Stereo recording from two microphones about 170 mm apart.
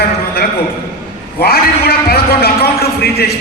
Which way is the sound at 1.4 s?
65° left (ahead or behind).